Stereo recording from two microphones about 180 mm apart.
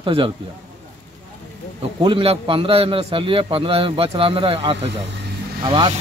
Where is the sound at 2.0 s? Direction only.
30° right (ahead or behind).